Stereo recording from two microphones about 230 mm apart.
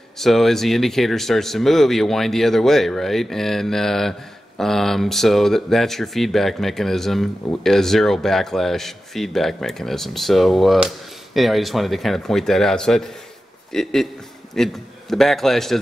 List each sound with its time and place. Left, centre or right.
0.2 s a man's voice: centre